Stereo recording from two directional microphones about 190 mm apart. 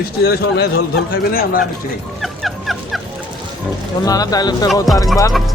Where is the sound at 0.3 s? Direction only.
60° left (ahead or behind).